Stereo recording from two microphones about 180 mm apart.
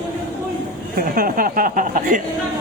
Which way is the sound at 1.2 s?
50° right (ahead or behind).